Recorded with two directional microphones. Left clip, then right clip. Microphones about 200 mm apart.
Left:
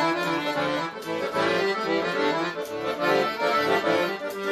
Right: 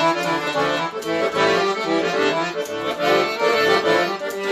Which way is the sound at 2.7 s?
5° right (ahead or behind).